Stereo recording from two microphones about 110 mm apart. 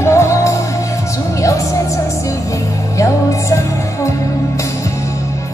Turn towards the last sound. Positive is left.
turn(degrees=30)  # may be behind; listen again after turning